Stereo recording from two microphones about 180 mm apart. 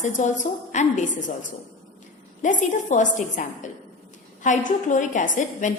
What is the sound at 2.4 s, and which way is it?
A woman's voice, 45° left (ahead or behind).